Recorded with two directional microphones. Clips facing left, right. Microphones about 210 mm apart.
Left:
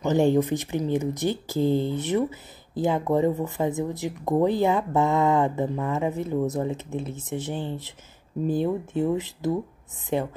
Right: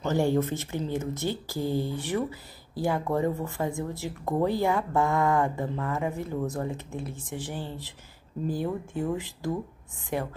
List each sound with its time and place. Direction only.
0.0 s speech: 20° left (ahead or behind)